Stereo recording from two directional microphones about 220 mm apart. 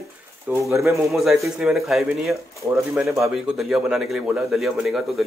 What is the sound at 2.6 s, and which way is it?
Speech, 15° right (ahead or behind).